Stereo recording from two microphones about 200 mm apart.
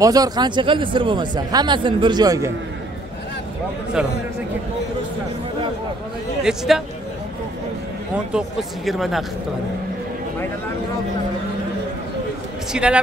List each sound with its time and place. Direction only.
0.0 s speech: 20° right (ahead or behind)
6.4 s speech: centre (ahead or behind)
8.3 s speech: centre (ahead or behind)
12.7 s speech: 5° right (ahead or behind)